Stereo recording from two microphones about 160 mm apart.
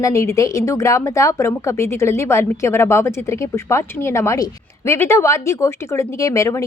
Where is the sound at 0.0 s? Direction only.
20° left (ahead or behind).